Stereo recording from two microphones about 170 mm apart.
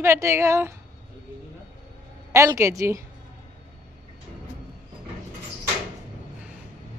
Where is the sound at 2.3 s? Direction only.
15° right (ahead or behind).